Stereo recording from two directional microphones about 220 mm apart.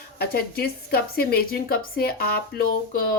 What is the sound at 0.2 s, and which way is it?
Speech, 45° left (ahead or behind).